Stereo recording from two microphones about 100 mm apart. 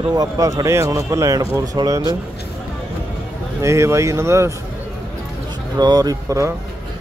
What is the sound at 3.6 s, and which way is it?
Speech, 30° right (ahead or behind).